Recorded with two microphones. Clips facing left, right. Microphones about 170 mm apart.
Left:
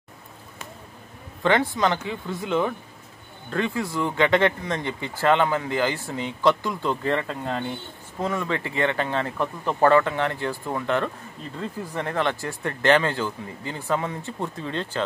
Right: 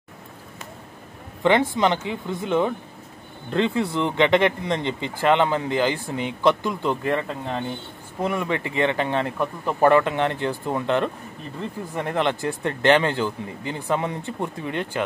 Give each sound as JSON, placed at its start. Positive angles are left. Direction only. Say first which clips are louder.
{"t": 1.4, "sound": "speech", "louder": "right 2 dB", "side_deg": -20}